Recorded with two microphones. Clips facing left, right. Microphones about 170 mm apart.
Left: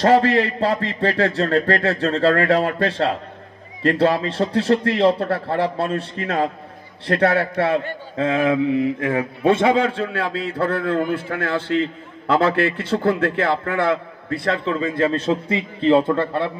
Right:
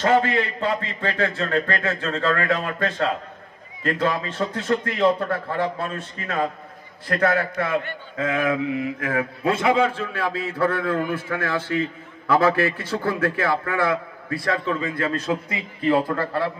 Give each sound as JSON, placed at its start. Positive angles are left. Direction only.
{"t": 0.0, "sound": "a man's voice", "side_deg": 35}